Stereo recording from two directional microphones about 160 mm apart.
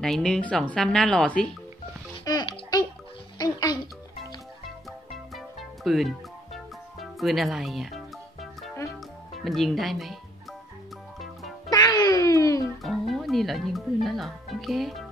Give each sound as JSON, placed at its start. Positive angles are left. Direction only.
{"t": 0.0, "sound": "a woman's voice", "side_deg": 5}
{"t": 2.2, "sound": "music", "side_deg": 30}
{"t": 4.6, "sound": "music", "side_deg": 0}
{"t": 9.3, "sound": "a woman's voice", "side_deg": 0}
{"t": 11.1, "sound": "music", "side_deg": 0}
{"t": 11.7, "sound": "music", "side_deg": 25}
{"t": 12.8, "sound": "speech", "side_deg": 0}